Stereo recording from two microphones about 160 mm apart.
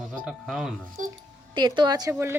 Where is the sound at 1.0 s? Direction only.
55° right (ahead or behind).